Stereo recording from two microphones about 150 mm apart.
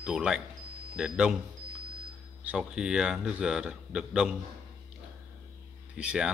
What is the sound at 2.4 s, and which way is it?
Speech, 5° right (ahead or behind).